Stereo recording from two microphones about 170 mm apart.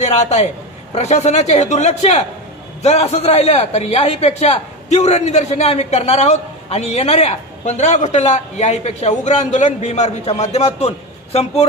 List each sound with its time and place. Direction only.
0.0 s a man's voice: 40° left (ahead or behind)